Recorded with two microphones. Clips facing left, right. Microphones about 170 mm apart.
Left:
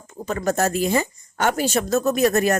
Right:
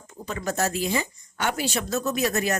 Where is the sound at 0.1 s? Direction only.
45° left (ahead or behind).